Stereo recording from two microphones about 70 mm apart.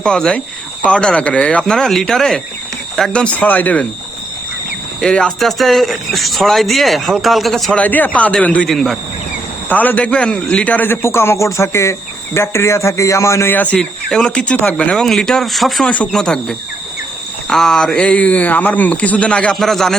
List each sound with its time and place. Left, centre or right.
0.0 s speech: centre
1.6 s speech: centre; by 3.8 s left
4.9 s speech: centre
7.7 s speech: left
8.6 s speech: centre
9.6 s speech: left
10.9 s speech: left
13.5 s speech: left
13.7 s speech: centre
19.5 s speech: centre